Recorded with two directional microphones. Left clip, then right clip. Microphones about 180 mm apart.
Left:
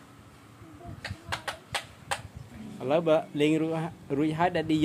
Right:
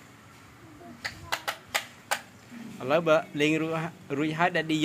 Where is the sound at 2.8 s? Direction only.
15° left (ahead or behind).